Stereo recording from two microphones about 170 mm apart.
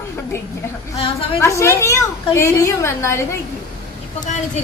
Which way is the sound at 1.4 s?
15° left (ahead or behind).